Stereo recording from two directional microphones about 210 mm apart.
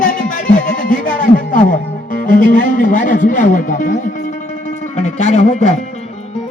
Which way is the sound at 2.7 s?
40° left (ahead or behind).